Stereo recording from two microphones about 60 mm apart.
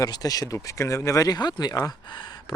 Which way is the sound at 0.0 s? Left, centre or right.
Left.